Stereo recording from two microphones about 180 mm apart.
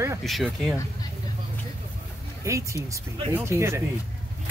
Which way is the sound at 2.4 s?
15° right (ahead or behind).